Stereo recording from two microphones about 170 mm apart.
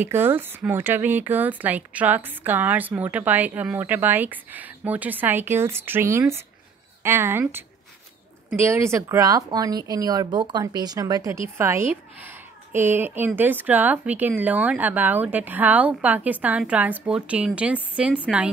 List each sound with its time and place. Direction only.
0.0 s speech: 15° right (ahead or behind)